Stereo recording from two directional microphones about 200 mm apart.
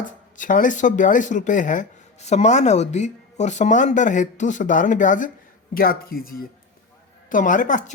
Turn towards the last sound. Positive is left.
turn(degrees=40)  # may be behind; listen again after turning